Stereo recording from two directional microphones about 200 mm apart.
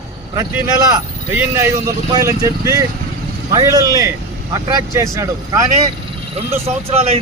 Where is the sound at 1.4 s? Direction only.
10° right (ahead or behind).